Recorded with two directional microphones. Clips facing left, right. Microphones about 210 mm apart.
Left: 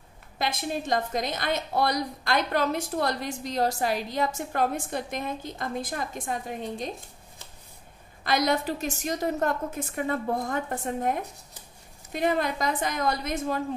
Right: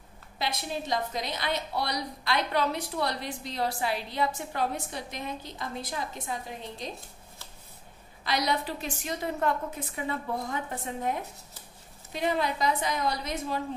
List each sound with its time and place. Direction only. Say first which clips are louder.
0.4 s a woman's voice: left 3 dB; 50° left (ahead or behind)
8.2 s a woman's voice: left 4 dB; 50° left (ahead or behind)